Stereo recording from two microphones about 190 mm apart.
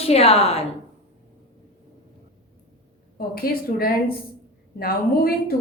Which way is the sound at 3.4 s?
50° left (ahead or behind).